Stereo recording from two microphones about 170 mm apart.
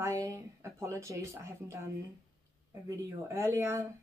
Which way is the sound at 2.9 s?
15° right (ahead or behind).